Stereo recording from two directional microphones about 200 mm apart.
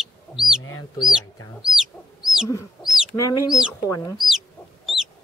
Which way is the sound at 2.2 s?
Centre (ahead or behind).